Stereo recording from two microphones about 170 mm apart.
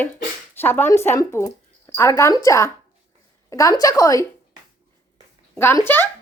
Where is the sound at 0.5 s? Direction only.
10° left (ahead or behind).